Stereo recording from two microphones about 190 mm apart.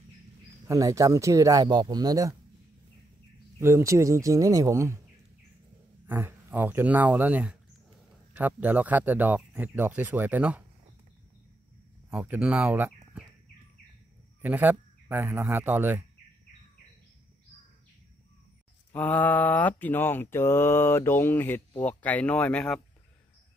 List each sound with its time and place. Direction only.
0.7 s speech: 15° right (ahead or behind)
3.5 s speech: 15° right (ahead or behind)
6.0 s speech: 10° right (ahead or behind)
12.1 s speech: 10° right (ahead or behind)
14.4 s speech: 10° right (ahead or behind)
18.9 s mantra: 10° left (ahead or behind)